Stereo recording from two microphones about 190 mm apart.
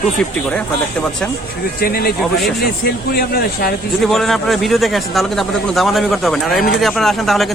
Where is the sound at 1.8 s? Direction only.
55° left (ahead or behind).